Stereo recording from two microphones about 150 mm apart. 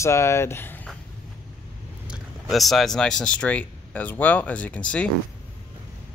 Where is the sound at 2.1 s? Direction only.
Centre (ahead or behind).